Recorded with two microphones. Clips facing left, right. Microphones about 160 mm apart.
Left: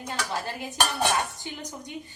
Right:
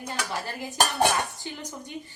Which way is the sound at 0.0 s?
15° left (ahead or behind).